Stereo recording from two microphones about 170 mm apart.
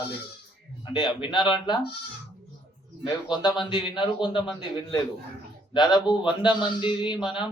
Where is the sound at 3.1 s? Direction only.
25° left (ahead or behind).